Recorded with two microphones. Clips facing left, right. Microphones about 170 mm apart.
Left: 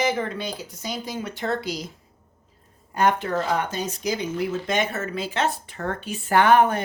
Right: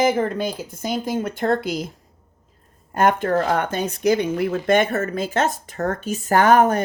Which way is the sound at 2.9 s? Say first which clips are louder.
Right 4 dB; 50° right (ahead or behind).